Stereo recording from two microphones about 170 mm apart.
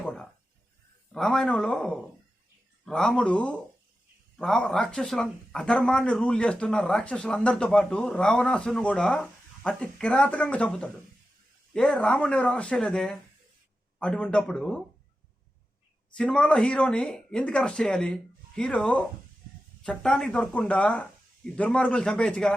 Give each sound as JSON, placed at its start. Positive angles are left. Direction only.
{"t": 0.0, "sound": "a sound", "side_deg": 5}
{"t": 1.1, "sound": "speech", "side_deg": 5}
{"t": 16.1, "sound": "speech", "side_deg": 5}